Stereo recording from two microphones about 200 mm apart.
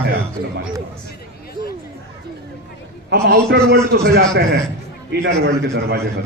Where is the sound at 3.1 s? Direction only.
50° right (ahead or behind).